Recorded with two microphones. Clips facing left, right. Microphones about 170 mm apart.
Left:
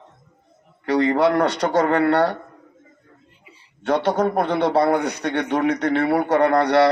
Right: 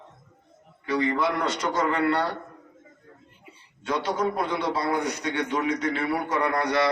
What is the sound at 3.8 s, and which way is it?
A man's voice, 60° left (ahead or behind).